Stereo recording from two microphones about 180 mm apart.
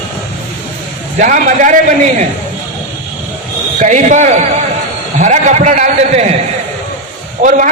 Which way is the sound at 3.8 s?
40° right (ahead or behind).